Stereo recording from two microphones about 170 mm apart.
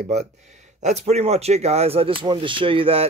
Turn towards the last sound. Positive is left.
turn(degrees=-30)  # may be behind; listen again after turning